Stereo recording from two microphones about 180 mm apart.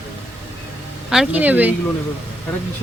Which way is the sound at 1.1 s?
5° right (ahead or behind).